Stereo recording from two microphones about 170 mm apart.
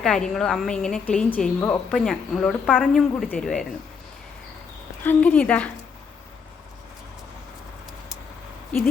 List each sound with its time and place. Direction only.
0.0 s a woman's voice: 5° left (ahead or behind)
5.0 s speech: 10° left (ahead or behind)